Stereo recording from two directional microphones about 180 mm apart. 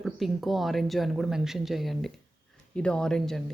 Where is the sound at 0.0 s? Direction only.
Centre (ahead or behind).